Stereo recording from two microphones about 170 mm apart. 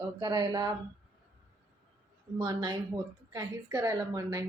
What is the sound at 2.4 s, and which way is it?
A woman's voice, 20° right (ahead or behind).